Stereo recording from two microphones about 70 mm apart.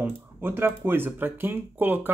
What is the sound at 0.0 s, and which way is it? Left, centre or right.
Speech, right.